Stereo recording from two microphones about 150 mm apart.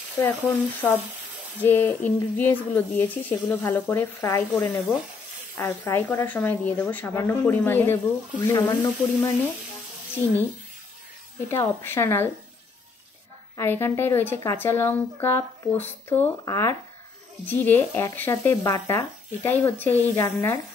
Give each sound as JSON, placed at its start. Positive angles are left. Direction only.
{"t": 0.2, "sound": "a woman's voice", "side_deg": 15}
{"t": 11.4, "sound": "a woman's voice", "side_deg": 15}
{"t": 13.6, "sound": "a woman's voice", "side_deg": 15}